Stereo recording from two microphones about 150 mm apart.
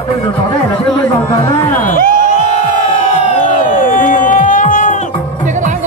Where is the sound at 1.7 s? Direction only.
60° left (ahead or behind).